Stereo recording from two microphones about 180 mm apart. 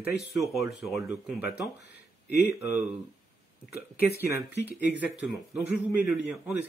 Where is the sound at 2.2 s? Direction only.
65° left (ahead or behind).